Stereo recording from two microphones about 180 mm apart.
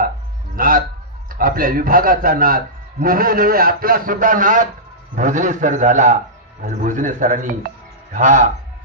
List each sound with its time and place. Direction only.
0.6 s a man's voice: 50° right (ahead or behind)